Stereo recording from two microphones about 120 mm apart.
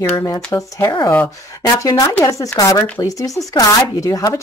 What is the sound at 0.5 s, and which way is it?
Speech, 25° left (ahead or behind).